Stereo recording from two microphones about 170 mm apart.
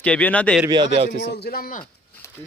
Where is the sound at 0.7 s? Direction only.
30° right (ahead or behind).